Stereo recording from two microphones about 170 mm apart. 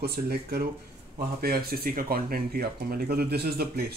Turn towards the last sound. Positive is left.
turn(degrees=-65)  # may be behind; listen again after turning